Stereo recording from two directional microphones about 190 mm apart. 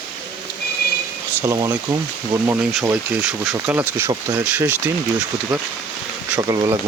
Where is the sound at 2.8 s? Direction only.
5° right (ahead or behind).